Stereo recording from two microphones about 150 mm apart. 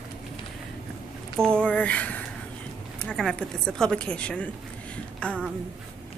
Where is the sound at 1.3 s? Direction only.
5° left (ahead or behind).